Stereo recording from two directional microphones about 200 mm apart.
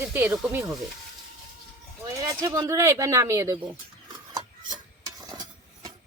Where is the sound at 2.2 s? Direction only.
15° right (ahead or behind).